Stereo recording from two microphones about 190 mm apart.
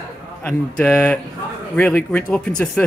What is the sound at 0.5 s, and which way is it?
Speech, 10° left (ahead or behind).